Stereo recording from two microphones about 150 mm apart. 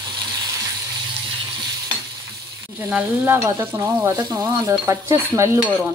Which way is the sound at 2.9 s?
15° right (ahead or behind).